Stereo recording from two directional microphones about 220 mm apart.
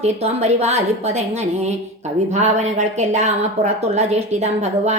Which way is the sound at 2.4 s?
30° right (ahead or behind).